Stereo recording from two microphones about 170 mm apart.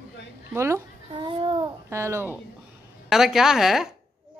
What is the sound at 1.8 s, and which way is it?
Speech, 15° right (ahead or behind).